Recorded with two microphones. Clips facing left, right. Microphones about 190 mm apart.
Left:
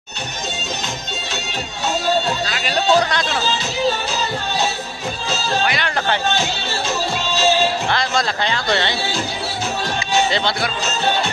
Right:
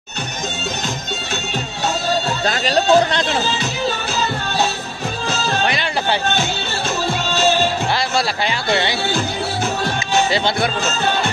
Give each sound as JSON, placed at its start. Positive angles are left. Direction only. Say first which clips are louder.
{"t": 2.4, "sound": "chatter", "louder": "right 3 dB", "side_deg": -40}
{"t": 5.7, "sound": "music", "louder": "right 1 dB", "side_deg": -15}
{"t": 7.9, "sound": "a man's voice", "louder": "right 1 dB", "side_deg": -10}